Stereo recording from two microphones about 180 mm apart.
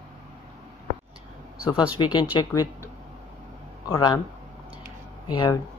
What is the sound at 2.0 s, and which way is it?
Speech, 25° left (ahead or behind).